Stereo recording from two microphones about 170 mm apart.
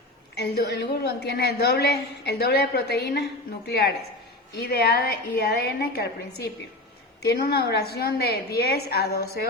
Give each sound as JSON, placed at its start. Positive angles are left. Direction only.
{"t": 0.3, "sound": "a woman's voice", "side_deg": 75}